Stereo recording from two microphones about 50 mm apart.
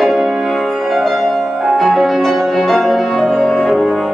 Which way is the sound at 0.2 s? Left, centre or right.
Centre.